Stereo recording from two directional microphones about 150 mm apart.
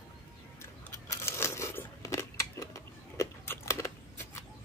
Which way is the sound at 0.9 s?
20° left (ahead or behind).